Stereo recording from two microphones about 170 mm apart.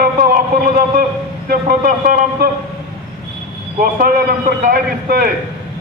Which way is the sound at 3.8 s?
60° right (ahead or behind).